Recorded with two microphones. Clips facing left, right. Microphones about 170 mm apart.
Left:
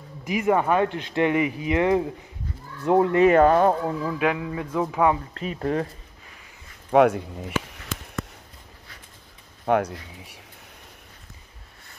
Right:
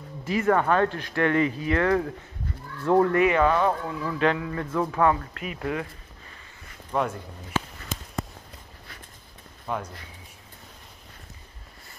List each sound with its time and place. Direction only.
0.2 s speech: 15° left (ahead or behind)
3.2 s speech: 45° left (ahead or behind)
4.0 s speech: 10° left (ahead or behind)
5.3 s speech: 35° left (ahead or behind)
6.9 s speech: 70° left (ahead or behind)
9.7 s speech: 75° left (ahead or behind)